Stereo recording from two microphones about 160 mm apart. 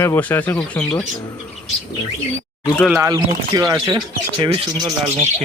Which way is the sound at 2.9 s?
20° right (ahead or behind).